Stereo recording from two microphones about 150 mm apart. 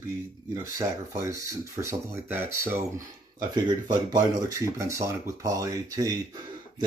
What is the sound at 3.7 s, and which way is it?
Speech, 25° right (ahead or behind).